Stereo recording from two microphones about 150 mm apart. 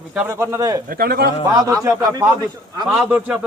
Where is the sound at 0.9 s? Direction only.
90° right.